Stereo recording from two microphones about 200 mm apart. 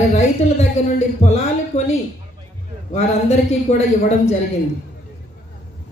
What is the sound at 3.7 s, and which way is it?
Speech, 35° left (ahead or behind).